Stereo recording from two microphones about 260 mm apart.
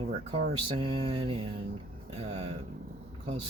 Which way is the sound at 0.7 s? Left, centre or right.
Centre.